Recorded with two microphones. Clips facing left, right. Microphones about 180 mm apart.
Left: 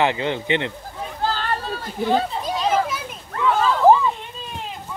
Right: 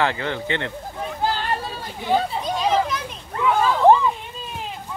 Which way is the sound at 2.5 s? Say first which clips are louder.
Right 1 dB; 5° left (ahead or behind).